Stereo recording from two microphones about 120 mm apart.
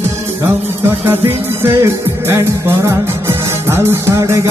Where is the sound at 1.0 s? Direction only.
15° right (ahead or behind).